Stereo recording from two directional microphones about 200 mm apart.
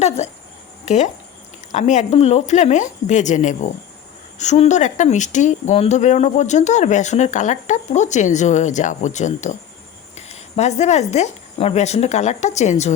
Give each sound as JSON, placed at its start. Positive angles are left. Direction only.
{"t": 0.2, "sound": "speech", "side_deg": 35}